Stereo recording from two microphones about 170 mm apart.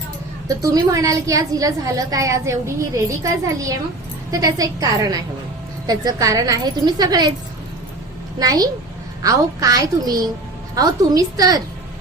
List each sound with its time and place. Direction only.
0.4 s a woman's voice: 20° right (ahead or behind)
8.4 s a woman's voice: 20° right (ahead or behind)